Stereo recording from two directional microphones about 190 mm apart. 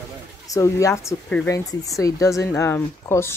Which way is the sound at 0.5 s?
15° left (ahead or behind).